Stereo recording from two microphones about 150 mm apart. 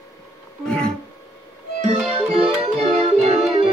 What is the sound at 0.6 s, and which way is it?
Music, 5° left (ahead or behind).